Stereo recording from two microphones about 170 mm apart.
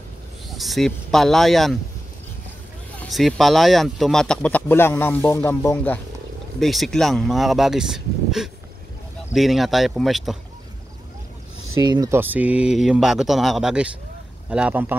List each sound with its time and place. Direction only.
0.6 s speech: centre (ahead or behind)
3.0 s speech: centre (ahead or behind)
6.6 s speech: centre (ahead or behind)
11.8 s speech: 25° right (ahead or behind)
12.2 s a man's voice: 10° right (ahead or behind)